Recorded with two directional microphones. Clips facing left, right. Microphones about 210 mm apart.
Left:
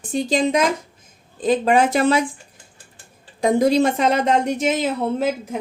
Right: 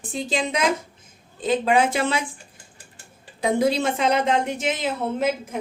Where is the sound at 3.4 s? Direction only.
40° left (ahead or behind).